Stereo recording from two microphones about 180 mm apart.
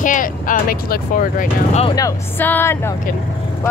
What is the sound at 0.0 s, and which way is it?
Speech, 45° left (ahead or behind).